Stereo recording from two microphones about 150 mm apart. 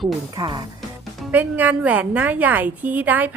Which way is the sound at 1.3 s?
10° right (ahead or behind).